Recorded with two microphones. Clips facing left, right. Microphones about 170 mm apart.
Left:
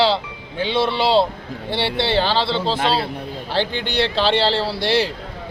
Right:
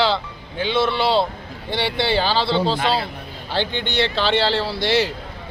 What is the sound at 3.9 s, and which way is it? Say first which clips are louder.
Speech: left 1 dB; 35° left (ahead or behind).